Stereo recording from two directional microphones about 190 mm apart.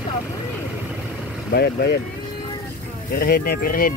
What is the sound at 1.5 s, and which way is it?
Speech, 60° left (ahead or behind).